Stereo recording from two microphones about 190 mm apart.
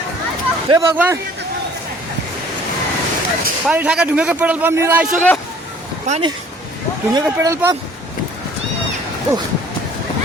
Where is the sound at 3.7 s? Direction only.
5° right (ahead or behind).